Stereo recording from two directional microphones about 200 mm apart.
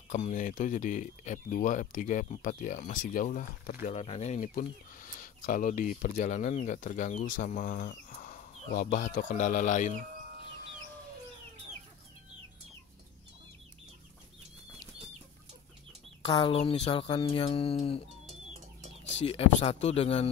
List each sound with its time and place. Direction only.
0.1 s speech: 40° left (ahead or behind)
3.8 s speech: 30° left (ahead or behind)
16.3 s speech: 25° left (ahead or behind)
19.1 s speech: 30° left (ahead or behind)